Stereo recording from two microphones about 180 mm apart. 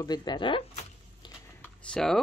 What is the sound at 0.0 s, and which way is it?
Speech, 25° left (ahead or behind).